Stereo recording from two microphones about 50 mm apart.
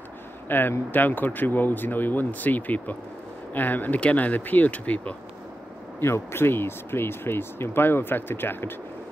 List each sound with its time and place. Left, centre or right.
0.5 s speech: left
5.9 s speech: left